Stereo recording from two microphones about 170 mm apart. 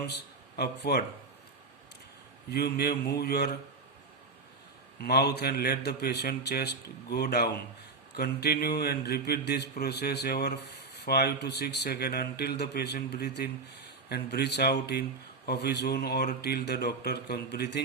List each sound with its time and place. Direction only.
0.0 s speech: 70° left (ahead or behind)
2.5 s a man's voice: 70° left (ahead or behind)
4.9 s a man's voice: 70° left (ahead or behind)